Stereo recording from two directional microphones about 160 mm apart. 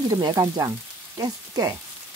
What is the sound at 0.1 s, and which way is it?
Frying, 25° right (ahead or behind).